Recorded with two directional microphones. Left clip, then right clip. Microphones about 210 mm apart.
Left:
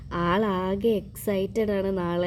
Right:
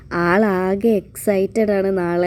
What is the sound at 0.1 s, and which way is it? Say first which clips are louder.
A woman's voice: right 8 dB; 20° right (ahead or behind).